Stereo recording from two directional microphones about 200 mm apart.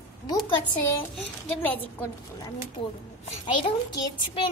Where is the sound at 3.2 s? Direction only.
25° left (ahead or behind).